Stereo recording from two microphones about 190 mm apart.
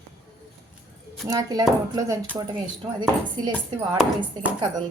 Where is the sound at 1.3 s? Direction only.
20° right (ahead or behind).